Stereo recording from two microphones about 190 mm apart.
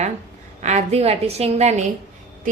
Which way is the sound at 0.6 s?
35° right (ahead or behind).